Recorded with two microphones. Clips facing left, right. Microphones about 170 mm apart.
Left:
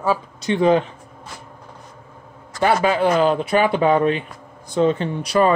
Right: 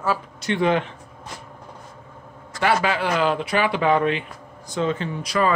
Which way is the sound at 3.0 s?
45° left (ahead or behind).